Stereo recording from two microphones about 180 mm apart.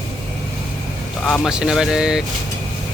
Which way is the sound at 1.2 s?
Centre (ahead or behind).